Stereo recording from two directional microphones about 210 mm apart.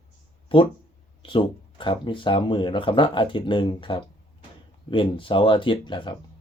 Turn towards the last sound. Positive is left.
turn(degrees=20)  # may be behind; listen again after turning